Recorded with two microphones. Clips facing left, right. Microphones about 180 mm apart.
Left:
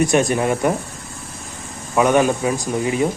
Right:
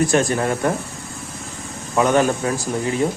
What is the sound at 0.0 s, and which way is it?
Speech, 20° left (ahead or behind).